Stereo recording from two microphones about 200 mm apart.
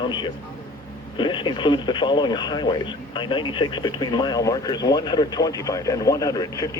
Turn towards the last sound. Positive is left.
turn(degrees=15)  # may be behind; listen again after turning